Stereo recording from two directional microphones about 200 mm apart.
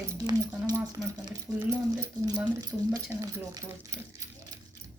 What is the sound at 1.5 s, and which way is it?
Speech, centre (ahead or behind).